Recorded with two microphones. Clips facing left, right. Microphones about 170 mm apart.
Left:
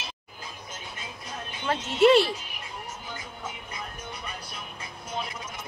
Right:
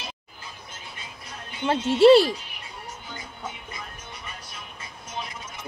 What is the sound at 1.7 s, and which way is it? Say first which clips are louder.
Speech: right 5 dB; 30° right (ahead or behind).